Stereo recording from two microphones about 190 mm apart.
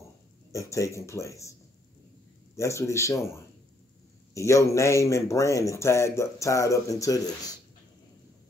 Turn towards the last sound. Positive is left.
turn(degrees=20)  # may be behind; listen again after turning